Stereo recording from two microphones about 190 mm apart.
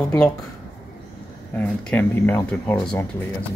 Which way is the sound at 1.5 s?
5° left (ahead or behind).